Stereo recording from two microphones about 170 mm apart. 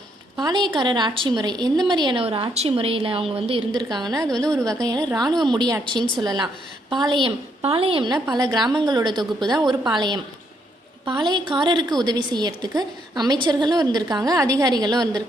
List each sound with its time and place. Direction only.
0.3 s a woman's voice: 25° right (ahead or behind)